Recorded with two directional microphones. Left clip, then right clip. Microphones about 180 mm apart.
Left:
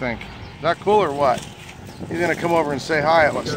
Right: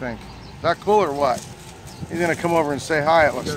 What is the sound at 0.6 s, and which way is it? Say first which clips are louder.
Speech: left 1 dB; centre (ahead or behind).